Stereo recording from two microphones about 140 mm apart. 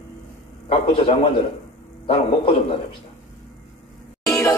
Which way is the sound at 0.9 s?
40° left (ahead or behind).